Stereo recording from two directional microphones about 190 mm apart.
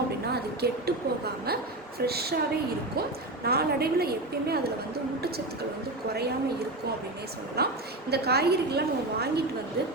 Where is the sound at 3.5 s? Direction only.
55° right (ahead or behind).